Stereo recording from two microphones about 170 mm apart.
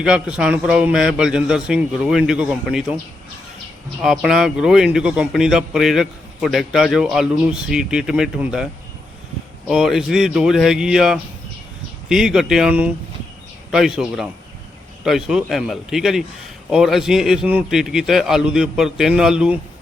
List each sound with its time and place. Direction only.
0.0 s speech: 5° right (ahead or behind)
4.0 s speech: centre (ahead or behind)